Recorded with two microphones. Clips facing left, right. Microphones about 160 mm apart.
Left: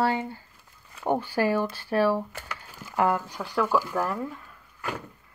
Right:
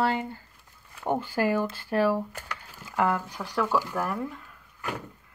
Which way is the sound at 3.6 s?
15° left (ahead or behind).